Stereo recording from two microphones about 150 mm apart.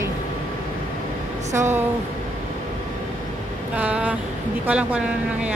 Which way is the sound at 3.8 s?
10° right (ahead or behind).